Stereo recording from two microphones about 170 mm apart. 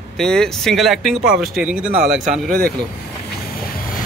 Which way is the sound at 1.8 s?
50° right (ahead or behind).